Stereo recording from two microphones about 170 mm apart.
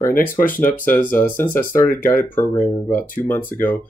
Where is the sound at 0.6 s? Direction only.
50° left (ahead or behind).